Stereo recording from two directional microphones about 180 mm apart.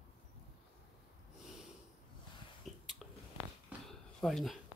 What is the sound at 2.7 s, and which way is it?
Squish, centre (ahead or behind).